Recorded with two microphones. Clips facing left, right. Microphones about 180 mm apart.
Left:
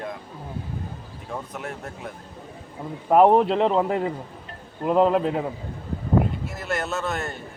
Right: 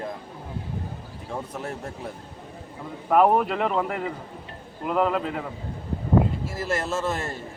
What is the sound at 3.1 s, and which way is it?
Speech, 25° left (ahead or behind).